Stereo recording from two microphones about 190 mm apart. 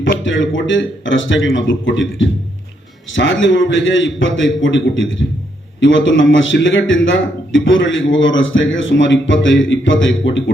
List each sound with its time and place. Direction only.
0.2 s a man's voice: 85° left